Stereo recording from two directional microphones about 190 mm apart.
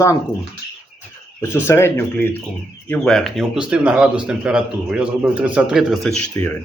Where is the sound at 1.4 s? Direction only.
15° left (ahead or behind).